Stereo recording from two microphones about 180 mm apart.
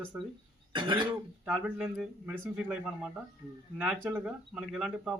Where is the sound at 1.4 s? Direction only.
5° right (ahead or behind).